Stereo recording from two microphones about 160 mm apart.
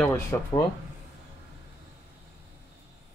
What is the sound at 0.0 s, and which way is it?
Speech, 15° left (ahead or behind).